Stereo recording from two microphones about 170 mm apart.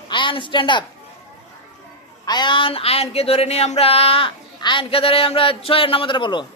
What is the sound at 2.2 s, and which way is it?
A man's voice, 25° left (ahead or behind).